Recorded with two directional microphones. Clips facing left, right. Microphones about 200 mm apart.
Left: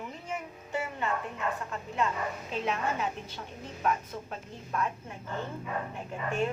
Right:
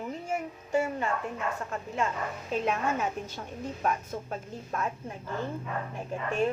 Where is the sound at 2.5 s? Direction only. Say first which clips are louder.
Right 4 dB; 45° right (ahead or behind).